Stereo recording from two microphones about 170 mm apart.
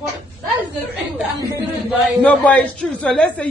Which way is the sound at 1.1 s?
10° right (ahead or behind).